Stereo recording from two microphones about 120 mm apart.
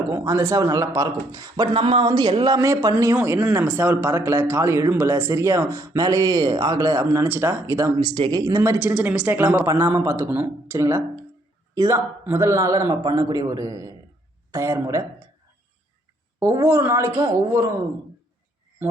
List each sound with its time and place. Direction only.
0.1 s speech: 25° right (ahead or behind)
1.7 s speech: 45° right (ahead or behind)
2.6 s speech: 25° right (ahead or behind)
7.9 s speech: 40° right (ahead or behind)
8.5 s speech: 20° right (ahead or behind)
16.4 s speech: 25° right (ahead or behind)